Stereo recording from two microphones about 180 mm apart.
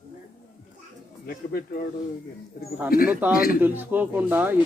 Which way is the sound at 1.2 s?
60° left (ahead or behind).